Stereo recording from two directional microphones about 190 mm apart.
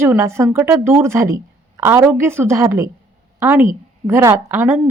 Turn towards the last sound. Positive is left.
turn(degrees=-10)  # may be behind; listen again after turning